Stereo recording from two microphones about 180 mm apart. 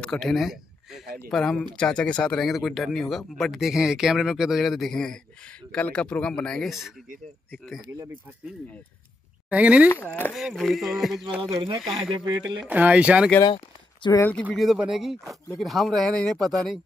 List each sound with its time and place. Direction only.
0.0 s speech: centre (ahead or behind)
9.5 s speech: 5° right (ahead or behind)
11.4 s speech: 30° right (ahead or behind)
12.6 s speech: 10° right (ahead or behind)
14.0 s speech: 25° left (ahead or behind)
14.4 s speech: centre (ahead or behind)